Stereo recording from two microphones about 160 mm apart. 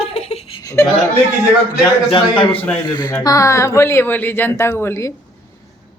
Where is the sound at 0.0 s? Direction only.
40° left (ahead or behind).